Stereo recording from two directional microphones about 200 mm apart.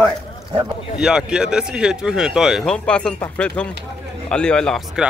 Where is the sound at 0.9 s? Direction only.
5° right (ahead or behind).